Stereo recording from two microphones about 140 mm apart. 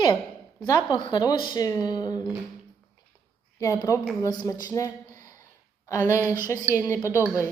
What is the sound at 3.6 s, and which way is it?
A woman's voice, 25° left (ahead or behind).